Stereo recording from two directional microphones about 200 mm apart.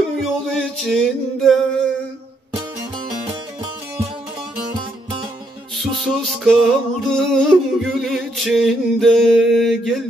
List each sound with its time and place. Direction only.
0.2 s music: centre (ahead or behind)
5.8 s music: centre (ahead or behind)